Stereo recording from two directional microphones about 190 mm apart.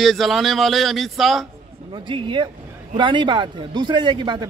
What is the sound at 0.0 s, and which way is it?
A man's voice, centre (ahead or behind).